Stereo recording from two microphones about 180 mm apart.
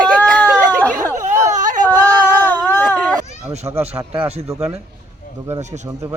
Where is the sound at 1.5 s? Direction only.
45° right (ahead or behind).